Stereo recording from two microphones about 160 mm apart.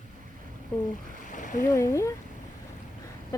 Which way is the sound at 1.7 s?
20° left (ahead or behind).